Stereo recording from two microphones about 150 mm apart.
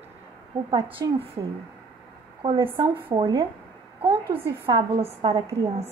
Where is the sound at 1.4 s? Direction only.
25° right (ahead or behind).